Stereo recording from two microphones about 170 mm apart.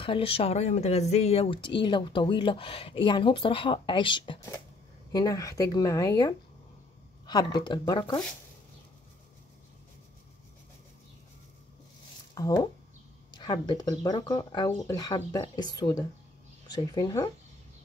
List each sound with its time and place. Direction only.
0.0 s speech: 30° left (ahead or behind)
12.4 s speech: 20° left (ahead or behind)
16.7 s speech: 25° left (ahead or behind)